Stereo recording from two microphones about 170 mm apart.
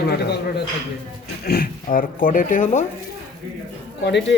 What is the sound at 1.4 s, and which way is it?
Speech, 60° left (ahead or behind).